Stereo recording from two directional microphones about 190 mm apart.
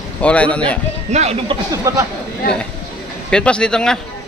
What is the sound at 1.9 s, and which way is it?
Speech, 15° right (ahead or behind).